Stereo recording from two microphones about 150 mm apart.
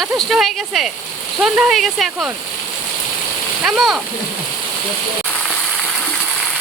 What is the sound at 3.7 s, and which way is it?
Speech, 5° right (ahead or behind).